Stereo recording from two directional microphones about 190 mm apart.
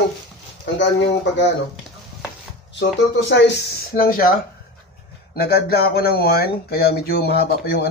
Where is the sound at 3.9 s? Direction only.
50° left (ahead or behind).